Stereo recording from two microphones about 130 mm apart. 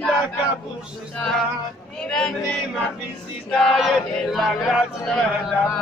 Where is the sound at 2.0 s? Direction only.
5° left (ahead or behind).